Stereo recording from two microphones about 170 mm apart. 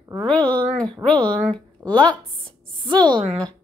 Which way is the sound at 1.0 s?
5° left (ahead or behind).